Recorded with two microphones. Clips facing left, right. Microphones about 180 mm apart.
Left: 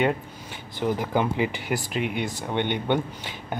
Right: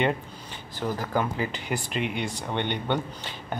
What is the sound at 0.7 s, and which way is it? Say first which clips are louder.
Speech: left 3 dB; 20° left (ahead or behind).